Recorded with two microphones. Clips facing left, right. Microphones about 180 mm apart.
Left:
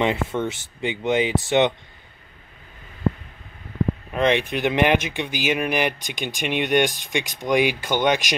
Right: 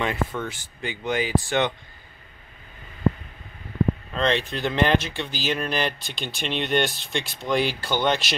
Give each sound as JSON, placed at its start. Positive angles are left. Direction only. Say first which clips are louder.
{"t": 0.0, "sound": "speech", "louder": "left 4 dB", "side_deg": 20}
{"t": 4.1, "sound": "speech", "louder": "left 3 dB", "side_deg": 15}